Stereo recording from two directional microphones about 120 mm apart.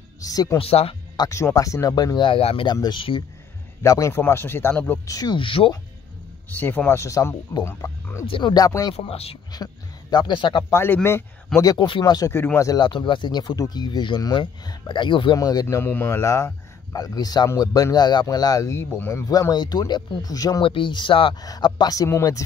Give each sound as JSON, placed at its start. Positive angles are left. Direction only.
{"t": 0.2, "sound": "a man's voice", "side_deg": 30}
{"t": 0.6, "sound": "speech", "side_deg": 55}
{"t": 1.1, "sound": "a man's voice", "side_deg": 30}
{"t": 3.8, "sound": "a man's voice", "side_deg": 25}
{"t": 5.0, "sound": "a man's voice", "side_deg": 30}
{"t": 6.5, "sound": "a man's voice", "side_deg": 15}
{"t": 8.3, "sound": "a man's voice", "side_deg": 40}
{"t": 8.6, "sound": "a man's voice", "side_deg": 30}
{"t": 8.9, "sound": "speech", "side_deg": 55}
{"t": 10.1, "sound": "a man's voice", "side_deg": 40}
{"t": 10.7, "sound": "a man's voice", "side_deg": 20}
{"t": 15.3, "sound": "a man's voice", "side_deg": 30}
{"t": 20.6, "sound": "speech", "side_deg": 45}
{"t": 21.4, "sound": "a man's voice", "side_deg": 35}